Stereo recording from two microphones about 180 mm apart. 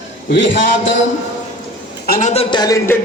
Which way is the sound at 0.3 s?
90° left.